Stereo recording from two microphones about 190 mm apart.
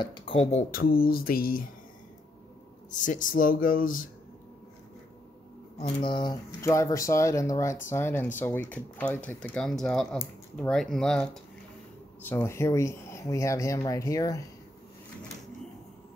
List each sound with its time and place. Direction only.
0.0 s speech: 25° left (ahead or behind); by 1.7 s 50° left (ahead or behind)
3.0 s speech: 45° left (ahead or behind)
5.8 s speech: 25° left (ahead or behind)
6.6 s speech: 15° left (ahead or behind)
12.3 s speech: 10° left (ahead or behind)